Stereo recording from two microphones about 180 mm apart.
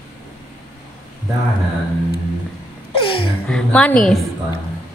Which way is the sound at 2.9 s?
30° left (ahead or behind).